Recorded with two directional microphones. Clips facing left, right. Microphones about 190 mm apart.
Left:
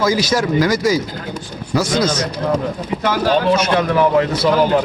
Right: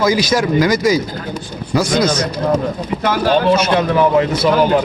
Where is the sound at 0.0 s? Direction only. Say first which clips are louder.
Right 2 dB; 15° right (ahead or behind).